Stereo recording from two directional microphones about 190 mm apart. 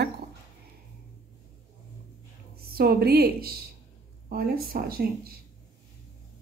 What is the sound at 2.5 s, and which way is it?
A woman's voice, 50° right (ahead or behind).